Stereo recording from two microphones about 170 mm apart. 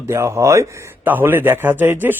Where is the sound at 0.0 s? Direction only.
15° right (ahead or behind).